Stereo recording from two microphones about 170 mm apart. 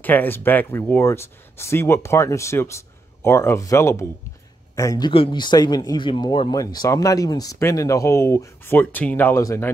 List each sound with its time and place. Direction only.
0.0 s speech: 10° left (ahead or behind)